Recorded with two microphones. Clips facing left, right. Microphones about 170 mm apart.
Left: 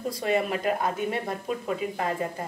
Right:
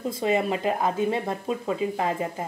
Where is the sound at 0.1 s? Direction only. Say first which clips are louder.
Right 2 dB; 25° right (ahead or behind).